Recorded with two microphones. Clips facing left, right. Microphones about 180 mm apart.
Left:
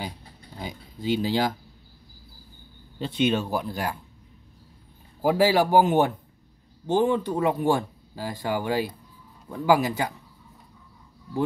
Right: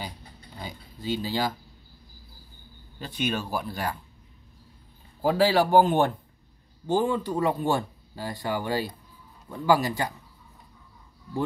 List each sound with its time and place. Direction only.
0.6 s speech: 15° left (ahead or behind)
3.0 s speech: 25° left (ahead or behind)
5.2 s speech: 15° left (ahead or behind)